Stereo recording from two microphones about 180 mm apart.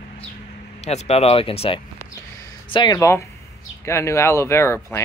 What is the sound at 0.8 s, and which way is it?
Speech, 35° left (ahead or behind).